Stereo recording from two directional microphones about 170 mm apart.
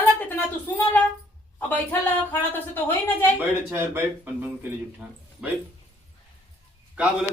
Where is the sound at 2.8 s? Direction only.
10° left (ahead or behind).